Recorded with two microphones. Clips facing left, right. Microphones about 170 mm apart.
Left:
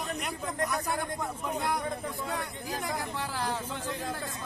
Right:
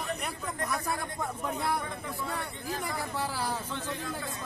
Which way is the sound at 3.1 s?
10° right (ahead or behind).